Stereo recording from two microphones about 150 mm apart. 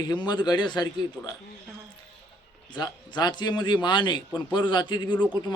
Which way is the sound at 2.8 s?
30° left (ahead or behind).